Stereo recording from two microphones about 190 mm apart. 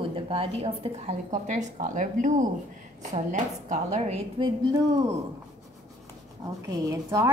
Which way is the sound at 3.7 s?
35° right (ahead or behind).